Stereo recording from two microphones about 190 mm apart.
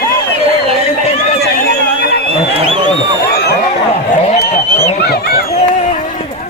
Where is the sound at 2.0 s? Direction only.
60° left (ahead or behind).